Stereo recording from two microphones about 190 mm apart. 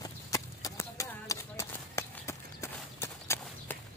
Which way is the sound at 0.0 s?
20° left (ahead or behind).